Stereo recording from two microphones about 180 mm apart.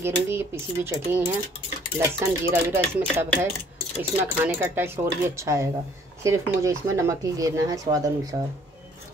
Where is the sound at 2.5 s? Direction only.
10° right (ahead or behind).